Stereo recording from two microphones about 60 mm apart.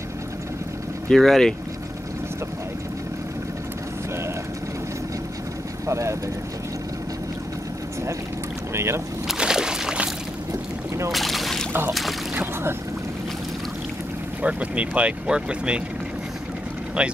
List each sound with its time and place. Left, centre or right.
1.1 s speech: centre
5.9 s speech: right
8.7 s speech: right
9.4 s a sound: centre
11.1 s boat: centre
11.9 s speech: centre
14.4 s speech: right
17.0 s speech: centre